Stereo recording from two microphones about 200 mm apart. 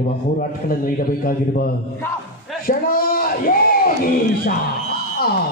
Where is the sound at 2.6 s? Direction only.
45° left (ahead or behind).